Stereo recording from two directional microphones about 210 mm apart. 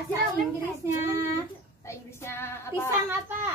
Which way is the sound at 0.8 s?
15° right (ahead or behind).